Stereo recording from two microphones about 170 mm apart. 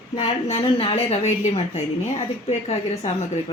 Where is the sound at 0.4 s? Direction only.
35° left (ahead or behind).